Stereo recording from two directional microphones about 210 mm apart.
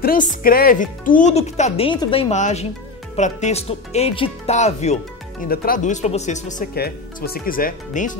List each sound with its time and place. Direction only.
0.0 s speech: 40° left (ahead or behind)
6.7 s speech: 45° left (ahead or behind)